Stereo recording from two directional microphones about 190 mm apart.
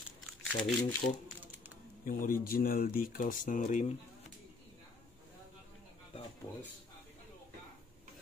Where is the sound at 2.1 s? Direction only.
45° left (ahead or behind).